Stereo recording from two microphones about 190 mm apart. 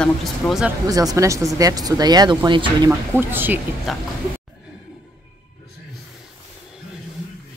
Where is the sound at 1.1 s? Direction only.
15° right (ahead or behind).